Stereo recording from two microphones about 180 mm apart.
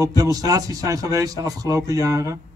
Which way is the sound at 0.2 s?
20° right (ahead or behind).